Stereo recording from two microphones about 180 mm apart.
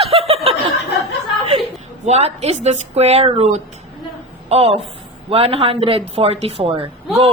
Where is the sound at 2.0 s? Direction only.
35° right (ahead or behind).